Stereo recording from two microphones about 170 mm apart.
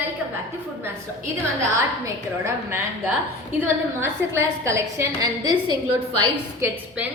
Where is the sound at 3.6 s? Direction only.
15° right (ahead or behind).